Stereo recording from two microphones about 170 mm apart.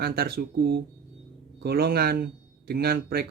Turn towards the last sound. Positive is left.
turn(degrees=-65)  # may be behind; listen again after turning